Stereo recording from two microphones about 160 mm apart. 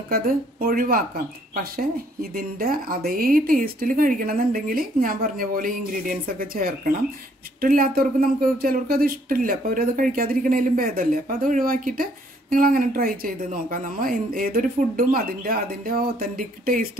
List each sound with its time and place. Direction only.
0.1 s speech: 65° right (ahead or behind)